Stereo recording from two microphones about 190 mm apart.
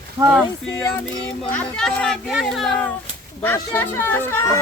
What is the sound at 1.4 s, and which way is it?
Speech, 5° left (ahead or behind).